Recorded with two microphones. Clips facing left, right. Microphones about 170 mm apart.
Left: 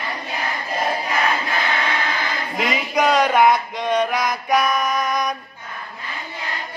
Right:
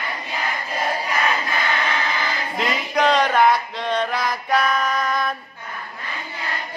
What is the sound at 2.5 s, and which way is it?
Male singing, 10° left (ahead or behind).